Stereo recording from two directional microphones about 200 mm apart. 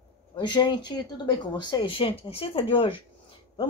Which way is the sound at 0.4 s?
20° left (ahead or behind).